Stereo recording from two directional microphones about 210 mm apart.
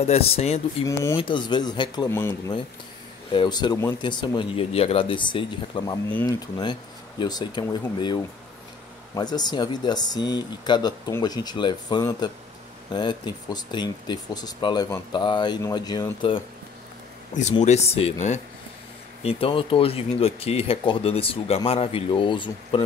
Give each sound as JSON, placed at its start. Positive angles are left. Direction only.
{"t": 0.0, "sound": "speech", "side_deg": 30}
{"t": 17.3, "sound": "speech", "side_deg": 35}